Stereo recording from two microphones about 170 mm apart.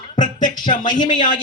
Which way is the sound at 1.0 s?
30° left (ahead or behind).